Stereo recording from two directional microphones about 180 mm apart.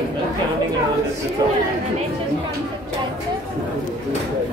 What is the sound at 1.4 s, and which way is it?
Chatter, 20° right (ahead or behind).